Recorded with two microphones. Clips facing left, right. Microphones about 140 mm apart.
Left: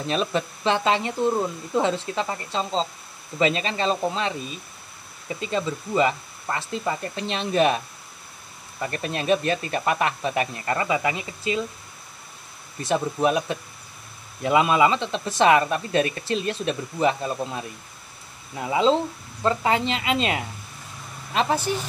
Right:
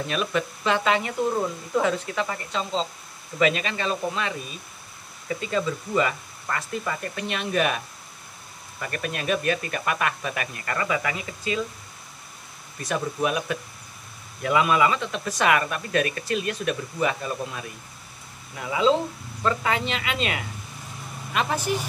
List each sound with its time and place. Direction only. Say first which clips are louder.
0.0 s speech: left 1 dB; 30° left (ahead or behind)
5.4 s speech: left 1 dB; 25° left (ahead or behind)
12.8 s speech: left 4 dB; 30° left (ahead or behind)
18.7 s speech: left 1 dB; 30° left (ahead or behind)